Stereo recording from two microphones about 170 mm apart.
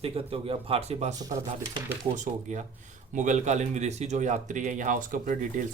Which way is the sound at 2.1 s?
45° right (ahead or behind).